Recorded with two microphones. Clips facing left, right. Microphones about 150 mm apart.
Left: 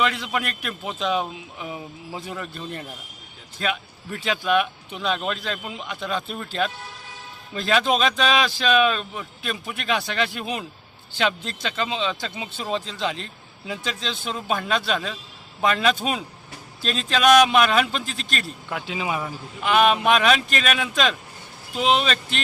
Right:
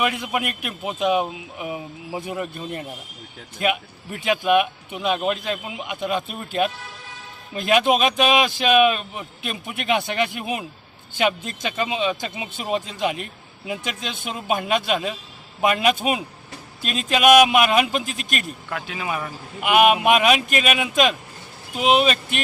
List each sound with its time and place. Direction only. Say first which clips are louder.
0.0 s speech: right 1 dB; 15° right (ahead or behind)
18.7 s speech: left 1 dB; 15° left (ahead or behind)
19.6 s speech: right 2 dB; 15° right (ahead or behind)